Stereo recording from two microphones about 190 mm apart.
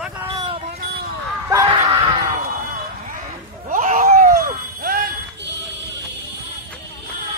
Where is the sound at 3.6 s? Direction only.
45° right (ahead or behind).